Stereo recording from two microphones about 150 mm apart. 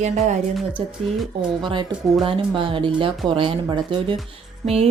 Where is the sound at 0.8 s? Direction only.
40° right (ahead or behind).